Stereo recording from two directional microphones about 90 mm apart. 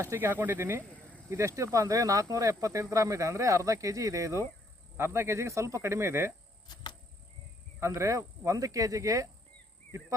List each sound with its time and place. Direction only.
0.0 s speech: 30° right (ahead or behind)
7.8 s speech: 30° right (ahead or behind)